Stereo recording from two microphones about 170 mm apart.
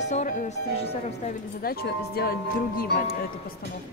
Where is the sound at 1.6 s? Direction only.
65° left (ahead or behind).